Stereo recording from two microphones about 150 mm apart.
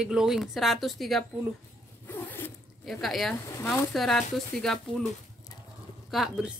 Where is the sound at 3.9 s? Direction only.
Centre (ahead or behind).